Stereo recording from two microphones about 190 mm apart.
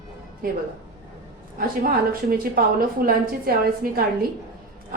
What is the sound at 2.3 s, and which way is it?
A woman's voice, 50° right (ahead or behind).